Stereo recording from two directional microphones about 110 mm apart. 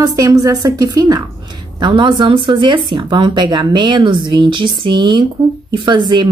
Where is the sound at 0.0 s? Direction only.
35° right (ahead or behind).